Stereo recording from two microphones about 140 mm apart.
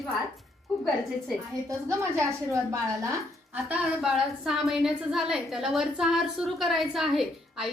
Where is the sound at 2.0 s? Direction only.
20° right (ahead or behind).